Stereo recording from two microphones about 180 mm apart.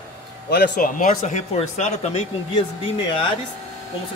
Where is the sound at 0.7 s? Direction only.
50° left (ahead or behind).